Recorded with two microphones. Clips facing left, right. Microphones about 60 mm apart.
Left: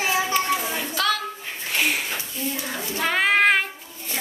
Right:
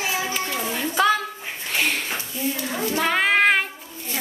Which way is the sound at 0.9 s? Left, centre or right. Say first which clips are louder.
Right 5 dB; centre.